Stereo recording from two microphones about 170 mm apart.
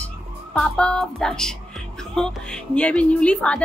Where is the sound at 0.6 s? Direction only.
5° left (ahead or behind).